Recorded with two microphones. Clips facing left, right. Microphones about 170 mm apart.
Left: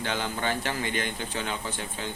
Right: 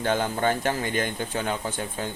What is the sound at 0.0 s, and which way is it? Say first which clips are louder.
Speech: right 6 dB; 45° right (ahead or behind).